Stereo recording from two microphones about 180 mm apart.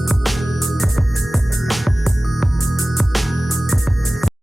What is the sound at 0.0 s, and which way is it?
Music, centre (ahead or behind).